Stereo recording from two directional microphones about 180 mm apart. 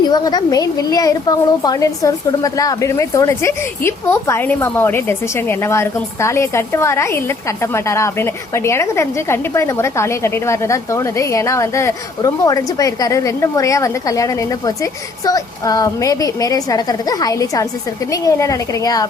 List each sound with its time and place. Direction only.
0.0 s a woman's voice: 20° left (ahead or behind)